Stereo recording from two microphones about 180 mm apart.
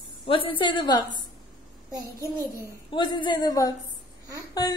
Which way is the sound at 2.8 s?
25° left (ahead or behind).